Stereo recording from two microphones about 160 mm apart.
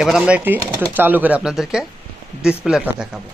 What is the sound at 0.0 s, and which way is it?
Speech, 5° right (ahead or behind).